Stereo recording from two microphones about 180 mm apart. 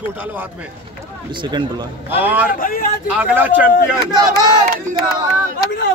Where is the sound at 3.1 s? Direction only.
10° right (ahead or behind).